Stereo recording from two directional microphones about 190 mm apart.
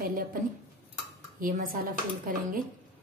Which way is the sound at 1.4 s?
45° right (ahead or behind).